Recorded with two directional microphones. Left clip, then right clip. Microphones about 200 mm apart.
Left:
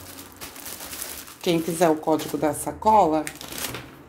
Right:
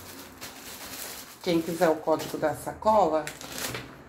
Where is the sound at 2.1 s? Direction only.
50° left (ahead or behind).